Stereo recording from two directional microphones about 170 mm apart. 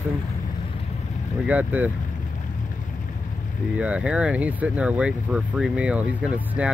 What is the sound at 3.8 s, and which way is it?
Speech, 5° right (ahead or behind).